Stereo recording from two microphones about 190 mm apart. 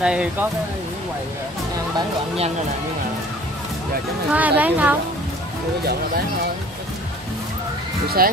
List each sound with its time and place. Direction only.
0.0 s speech: 5° right (ahead or behind)
2.0 s speech: 30° right (ahead or behind)
4.3 s speech: 10° right (ahead or behind)
8.2 s speech: 50° right (ahead or behind)